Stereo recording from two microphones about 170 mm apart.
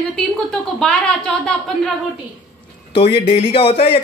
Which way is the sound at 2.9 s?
35° left (ahead or behind).